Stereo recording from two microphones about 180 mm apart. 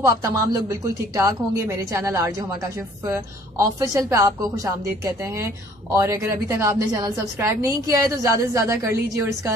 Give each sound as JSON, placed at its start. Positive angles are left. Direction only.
{"t": 0.0, "sound": "a woman's voice", "side_deg": -20}